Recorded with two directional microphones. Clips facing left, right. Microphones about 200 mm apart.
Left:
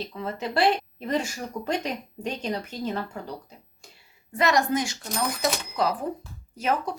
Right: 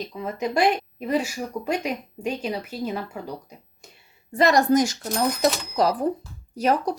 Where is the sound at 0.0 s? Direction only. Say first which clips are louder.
Right 3 dB; 15° right (ahead or behind).